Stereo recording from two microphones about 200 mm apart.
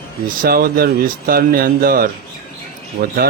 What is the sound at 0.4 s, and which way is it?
Speech, 45° right (ahead or behind).